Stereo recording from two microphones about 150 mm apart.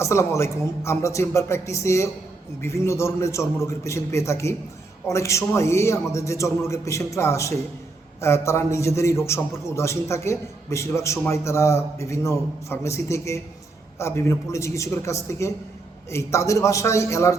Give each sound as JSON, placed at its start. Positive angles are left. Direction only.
{"t": 0.0, "sound": "a man's voice", "side_deg": 20}